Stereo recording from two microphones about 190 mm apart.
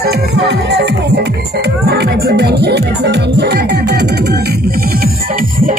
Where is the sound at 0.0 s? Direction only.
60° right (ahead or behind).